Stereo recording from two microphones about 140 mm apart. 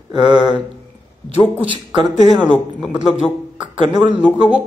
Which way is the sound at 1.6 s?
35° right (ahead or behind).